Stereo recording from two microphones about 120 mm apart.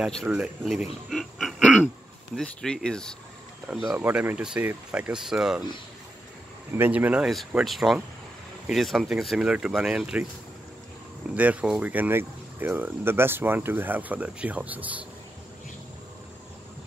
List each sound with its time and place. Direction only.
0.0 s speech: centre (ahead or behind)
4.0 s speech: 15° right (ahead or behind)
6.7 s speech: 15° right (ahead or behind)
7.2 s speech: centre (ahead or behind)
11.3 s speech: 10° right (ahead or behind)